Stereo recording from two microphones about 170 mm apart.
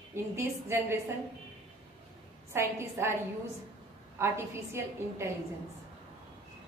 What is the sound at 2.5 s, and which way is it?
Speech, 15° right (ahead or behind).